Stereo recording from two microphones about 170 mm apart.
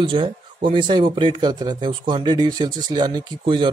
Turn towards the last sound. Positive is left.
turn(degrees=-30)  # may be behind; listen again after turning